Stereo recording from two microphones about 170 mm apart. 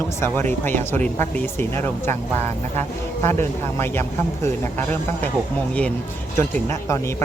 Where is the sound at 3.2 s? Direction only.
15° left (ahead or behind).